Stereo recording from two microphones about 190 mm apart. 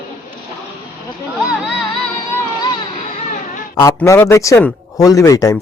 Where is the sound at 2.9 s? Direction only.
40° left (ahead or behind).